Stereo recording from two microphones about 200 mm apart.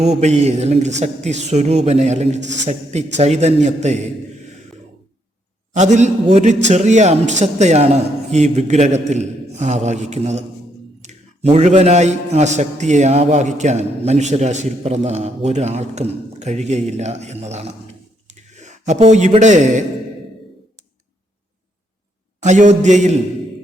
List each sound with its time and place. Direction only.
0.0 s a man's voice: 35° right (ahead or behind)
5.7 s a man's voice: 35° right (ahead or behind)
22.4 s a man's voice: 35° right (ahead or behind)